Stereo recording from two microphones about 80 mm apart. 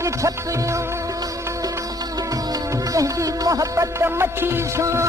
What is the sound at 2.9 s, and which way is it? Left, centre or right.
Music, right.